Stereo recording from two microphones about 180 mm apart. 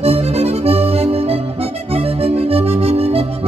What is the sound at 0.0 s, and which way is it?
Music, 35° right (ahead or behind).